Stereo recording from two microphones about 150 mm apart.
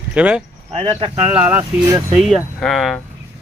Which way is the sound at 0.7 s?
40° right (ahead or behind).